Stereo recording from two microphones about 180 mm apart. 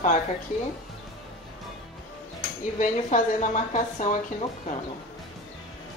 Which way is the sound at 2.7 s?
45° left (ahead or behind).